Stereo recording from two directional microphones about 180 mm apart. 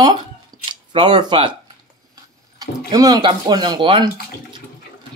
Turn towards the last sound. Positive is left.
turn(degrees=-25)  # may be behind; listen again after turning